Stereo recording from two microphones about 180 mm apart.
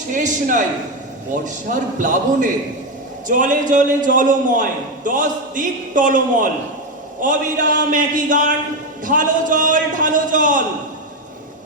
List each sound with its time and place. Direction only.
0.1 s a man's voice: 45° right (ahead or behind)